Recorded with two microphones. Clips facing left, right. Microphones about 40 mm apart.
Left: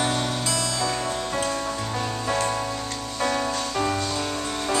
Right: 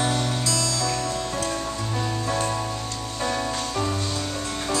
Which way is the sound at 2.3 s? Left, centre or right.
Centre.